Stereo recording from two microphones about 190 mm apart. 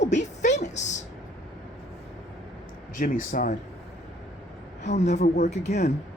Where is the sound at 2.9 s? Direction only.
45° left (ahead or behind).